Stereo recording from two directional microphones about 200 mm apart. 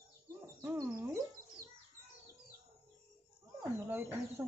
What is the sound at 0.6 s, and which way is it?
Speech, 15° right (ahead or behind).